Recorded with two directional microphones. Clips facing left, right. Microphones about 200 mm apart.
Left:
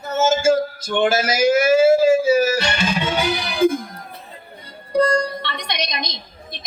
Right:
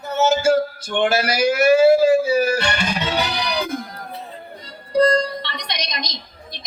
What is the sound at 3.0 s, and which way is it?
Music, 50° left (ahead or behind).